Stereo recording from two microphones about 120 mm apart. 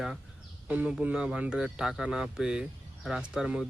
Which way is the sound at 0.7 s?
10° right (ahead or behind).